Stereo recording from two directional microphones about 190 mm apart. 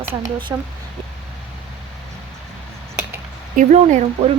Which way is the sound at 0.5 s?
15° right (ahead or behind).